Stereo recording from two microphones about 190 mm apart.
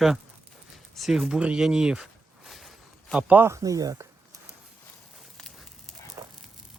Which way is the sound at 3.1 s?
5° right (ahead or behind).